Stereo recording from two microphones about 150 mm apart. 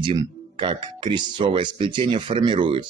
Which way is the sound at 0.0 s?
30° right (ahead or behind).